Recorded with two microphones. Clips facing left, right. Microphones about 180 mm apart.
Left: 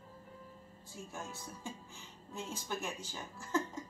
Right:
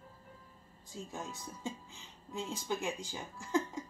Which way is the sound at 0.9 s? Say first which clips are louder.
Right 3 dB; 15° right (ahead or behind).